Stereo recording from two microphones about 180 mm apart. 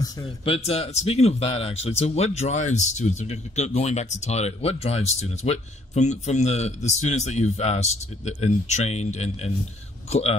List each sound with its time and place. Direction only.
0.5 s speech: 35° left (ahead or behind)